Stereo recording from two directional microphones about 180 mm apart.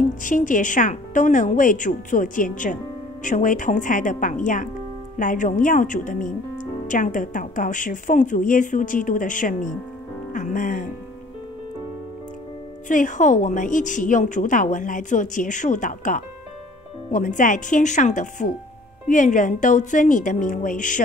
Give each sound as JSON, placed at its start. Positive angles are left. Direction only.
{"t": 0.2, "sound": "a woman's voice", "side_deg": 45}
{"t": 12.8, "sound": "a woman's voice", "side_deg": 45}